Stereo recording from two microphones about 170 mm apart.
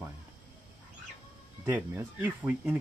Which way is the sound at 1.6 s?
15° right (ahead or behind).